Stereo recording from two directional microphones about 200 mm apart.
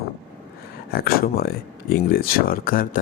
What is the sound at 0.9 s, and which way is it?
Speech, 50° left (ahead or behind).